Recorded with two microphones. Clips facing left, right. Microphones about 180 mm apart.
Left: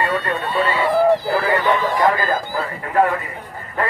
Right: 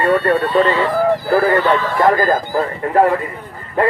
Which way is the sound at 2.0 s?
45° right (ahead or behind).